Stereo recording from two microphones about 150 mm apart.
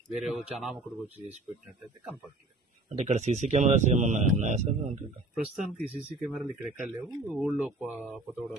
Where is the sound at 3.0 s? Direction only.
50° right (ahead or behind).